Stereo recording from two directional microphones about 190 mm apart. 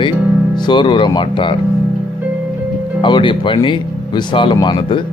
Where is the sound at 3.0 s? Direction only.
25° left (ahead or behind).